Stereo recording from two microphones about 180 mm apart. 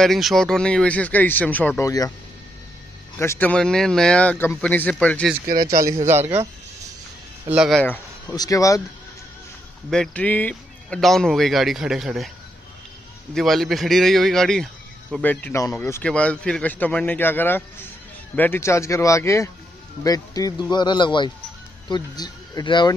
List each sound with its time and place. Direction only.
0.0 s speech: centre (ahead or behind); by 2.1 s 20° left (ahead or behind)
3.2 s speech: 10° left (ahead or behind)
5.5 s speech: 55° right (ahead or behind)
6.0 s speech: 10° right (ahead or behind)
7.4 s a man's voice: 5° right (ahead or behind)
7.8 s speech: 10° left (ahead or behind)
9.8 s a man's voice: 5° left (ahead or behind)
13.3 s a man's voice: centre (ahead or behind)
15.2 s speech: 15° left (ahead or behind)